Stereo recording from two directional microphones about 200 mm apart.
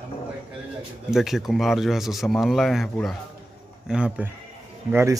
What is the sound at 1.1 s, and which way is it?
Speech, centre (ahead or behind).